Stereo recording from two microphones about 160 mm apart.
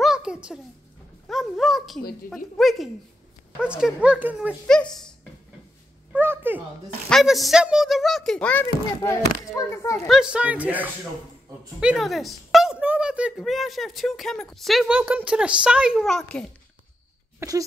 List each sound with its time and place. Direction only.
0.0 s a sound: 5° right (ahead or behind)
2.3 s speech: centre (ahead or behind)
6.1 s a sound: 15° right (ahead or behind)
7.1 s a child's voice: centre (ahead or behind); by 9.9 s 20° left (ahead or behind)
10.0 s speech: 5° right (ahead or behind)
17.4 s speech: 20° right (ahead or behind)